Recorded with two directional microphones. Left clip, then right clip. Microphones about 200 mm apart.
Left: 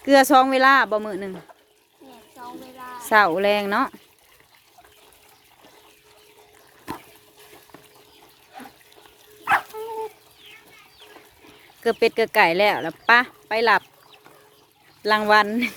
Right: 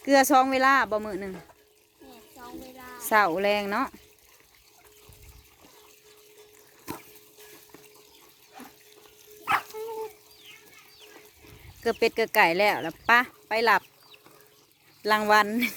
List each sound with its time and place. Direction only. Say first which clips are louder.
0.0 s speech: left 5 dB; 5° left (ahead or behind)
2.3 s bathtub: left 5 dB; 20° right (ahead or behind)
3.0 s speech: left 5 dB; centre (ahead or behind)
6.9 s water: left 5 dB; 5° right (ahead or behind)
9.4 s dog: left 6 dB; 15° left (ahead or behind)
11.8 s speech: left 5 dB; centre (ahead or behind)